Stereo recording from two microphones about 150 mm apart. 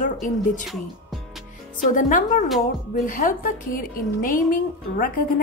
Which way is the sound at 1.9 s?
65° left (ahead or behind).